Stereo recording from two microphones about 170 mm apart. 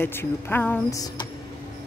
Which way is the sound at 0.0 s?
15° left (ahead or behind).